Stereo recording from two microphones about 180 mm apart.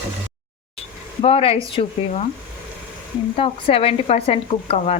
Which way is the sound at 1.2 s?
30° left (ahead or behind).